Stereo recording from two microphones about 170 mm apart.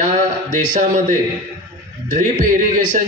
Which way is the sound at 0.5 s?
50° right (ahead or behind).